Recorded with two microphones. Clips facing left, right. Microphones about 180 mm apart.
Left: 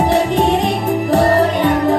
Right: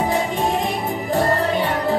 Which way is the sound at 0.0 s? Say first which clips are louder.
Left 6 dB; 75° left (ahead or behind).